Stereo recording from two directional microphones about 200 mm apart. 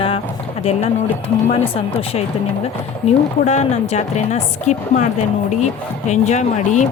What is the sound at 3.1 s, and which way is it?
A woman's voice, 35° left (ahead or behind).